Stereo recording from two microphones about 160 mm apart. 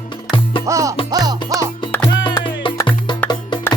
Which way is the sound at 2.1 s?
30° left (ahead or behind).